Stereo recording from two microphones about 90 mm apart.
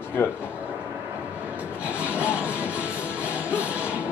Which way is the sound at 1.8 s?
15° right (ahead or behind).